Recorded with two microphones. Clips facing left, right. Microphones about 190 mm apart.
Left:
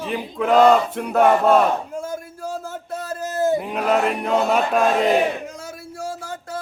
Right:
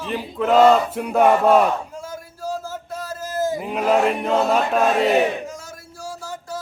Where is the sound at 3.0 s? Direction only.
60° left (ahead or behind).